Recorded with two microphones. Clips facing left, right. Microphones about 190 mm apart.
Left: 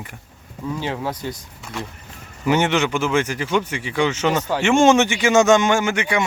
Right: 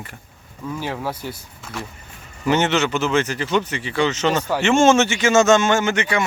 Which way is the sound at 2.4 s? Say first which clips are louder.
Even; 10° left (ahead or behind).